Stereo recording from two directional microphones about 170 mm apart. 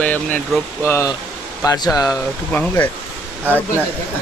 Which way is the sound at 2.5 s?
10° left (ahead or behind).